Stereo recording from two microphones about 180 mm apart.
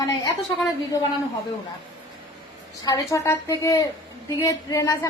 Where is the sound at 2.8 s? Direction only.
20° left (ahead or behind).